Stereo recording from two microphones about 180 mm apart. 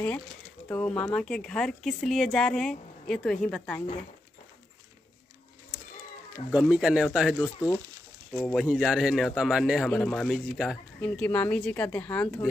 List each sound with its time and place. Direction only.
0.7 s speech: 5° left (ahead or behind)
6.5 s speech: 5° right (ahead or behind)
7.3 s speech: 10° left (ahead or behind)
8.5 s speech: 5° right (ahead or behind)